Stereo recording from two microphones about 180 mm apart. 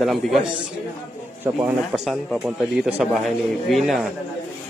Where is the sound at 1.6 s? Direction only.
5° right (ahead or behind).